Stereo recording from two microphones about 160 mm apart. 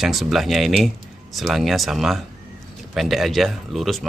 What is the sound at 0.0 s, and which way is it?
Speech, centre (ahead or behind).